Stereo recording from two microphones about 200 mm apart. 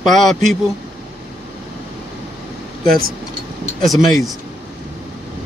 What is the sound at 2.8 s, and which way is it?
Speech, 45° right (ahead or behind).